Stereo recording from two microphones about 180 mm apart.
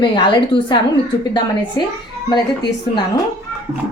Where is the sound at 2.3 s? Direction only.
25° left (ahead or behind).